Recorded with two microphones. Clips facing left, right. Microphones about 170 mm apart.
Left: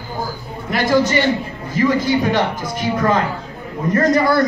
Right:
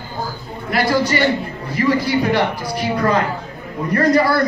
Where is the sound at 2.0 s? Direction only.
20° left (ahead or behind).